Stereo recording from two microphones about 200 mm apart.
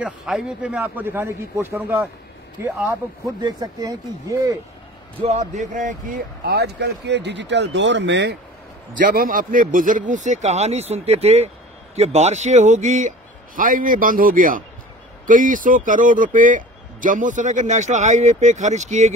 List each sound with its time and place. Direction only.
0.0 s a man's voice: 5° right (ahead or behind)
5.2 s speech: 35° right (ahead or behind); by 8.4 s 60° right (ahead or behind)
8.9 s speech: 45° right (ahead or behind)